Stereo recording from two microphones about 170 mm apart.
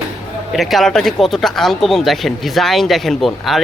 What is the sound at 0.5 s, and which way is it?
Speech, centre (ahead or behind).